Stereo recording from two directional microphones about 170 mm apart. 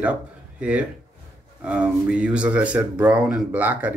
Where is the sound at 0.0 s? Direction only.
10° right (ahead or behind).